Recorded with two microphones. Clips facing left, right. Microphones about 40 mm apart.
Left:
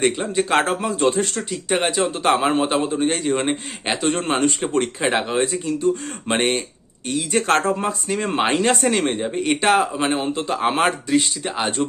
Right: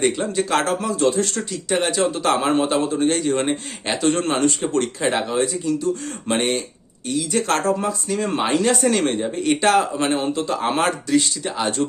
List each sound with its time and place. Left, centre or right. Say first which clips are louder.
0.3 s speech: left 1 dB; left
8.9 s speech: right 1 dB; centre